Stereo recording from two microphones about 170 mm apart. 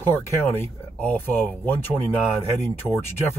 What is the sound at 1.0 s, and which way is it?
Speech, 10° left (ahead or behind).